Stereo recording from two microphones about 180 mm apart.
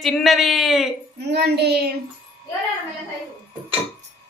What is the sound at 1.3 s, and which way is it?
Child singing, 65° right (ahead or behind).